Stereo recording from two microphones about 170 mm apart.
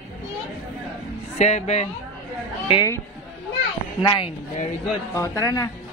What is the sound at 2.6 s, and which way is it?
Speech, 25° left (ahead or behind).